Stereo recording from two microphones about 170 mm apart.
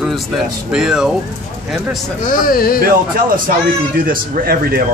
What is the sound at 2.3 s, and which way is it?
Speech, 60° left (ahead or behind).